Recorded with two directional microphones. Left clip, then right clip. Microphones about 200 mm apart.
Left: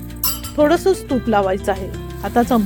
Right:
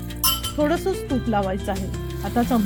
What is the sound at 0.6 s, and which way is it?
Speech, 50° left (ahead or behind).